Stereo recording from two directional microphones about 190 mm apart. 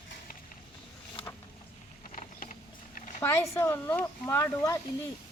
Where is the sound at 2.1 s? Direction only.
40° left (ahead or behind).